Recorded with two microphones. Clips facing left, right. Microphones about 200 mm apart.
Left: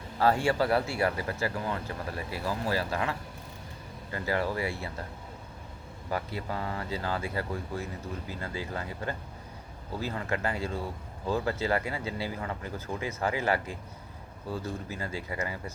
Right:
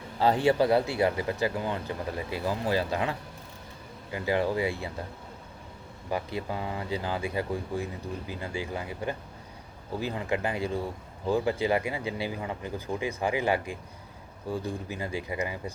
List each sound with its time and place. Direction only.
0.2 s speech: 20° right (ahead or behind)
6.1 s speech: 15° right (ahead or behind)